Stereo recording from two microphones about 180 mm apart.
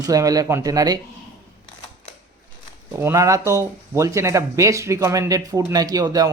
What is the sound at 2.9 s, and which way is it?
Speech, 15° right (ahead or behind).